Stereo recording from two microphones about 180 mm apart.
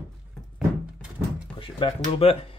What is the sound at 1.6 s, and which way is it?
Speech, 30° left (ahead or behind).